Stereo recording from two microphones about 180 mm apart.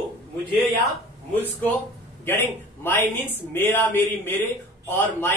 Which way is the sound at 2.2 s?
15° left (ahead or behind).